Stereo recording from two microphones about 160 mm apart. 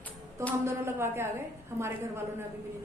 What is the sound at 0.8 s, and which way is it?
Speech, 15° right (ahead or behind).